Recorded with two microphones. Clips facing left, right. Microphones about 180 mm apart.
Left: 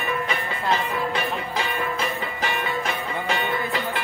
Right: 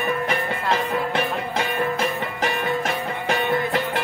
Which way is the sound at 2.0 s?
45° right (ahead or behind).